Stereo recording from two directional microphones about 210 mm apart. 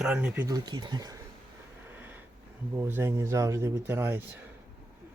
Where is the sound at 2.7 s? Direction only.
10° right (ahead or behind).